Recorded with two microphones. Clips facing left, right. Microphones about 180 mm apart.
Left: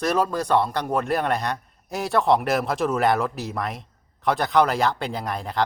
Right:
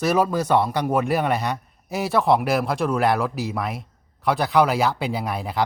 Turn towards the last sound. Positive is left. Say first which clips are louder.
# right 1 dB
turn(degrees=-5)  # may be behind; listen again after turning